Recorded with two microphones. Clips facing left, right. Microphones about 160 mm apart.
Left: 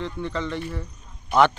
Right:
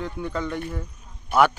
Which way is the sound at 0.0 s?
5° right (ahead or behind).